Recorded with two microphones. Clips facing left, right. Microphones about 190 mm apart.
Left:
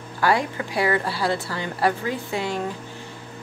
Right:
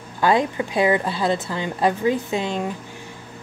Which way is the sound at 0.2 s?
20° right (ahead or behind).